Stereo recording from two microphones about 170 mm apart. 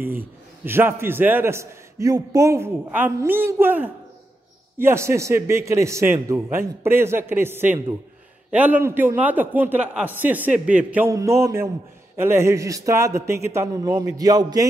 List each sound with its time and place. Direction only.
0.0 s a man's voice: 10° right (ahead or behind)